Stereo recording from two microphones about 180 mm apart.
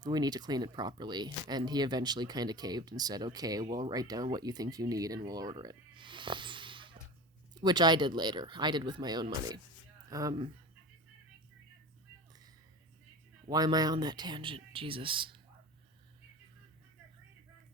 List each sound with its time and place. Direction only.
0.0 s speech: 20° right (ahead or behind)
13.5 s speech: 20° right (ahead or behind)